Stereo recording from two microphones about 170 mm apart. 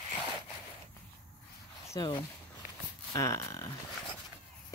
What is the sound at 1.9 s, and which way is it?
Speech, 25° left (ahead or behind).